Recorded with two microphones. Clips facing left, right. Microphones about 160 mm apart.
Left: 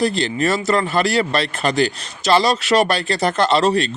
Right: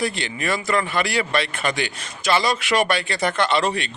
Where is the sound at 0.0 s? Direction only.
35° left (ahead or behind).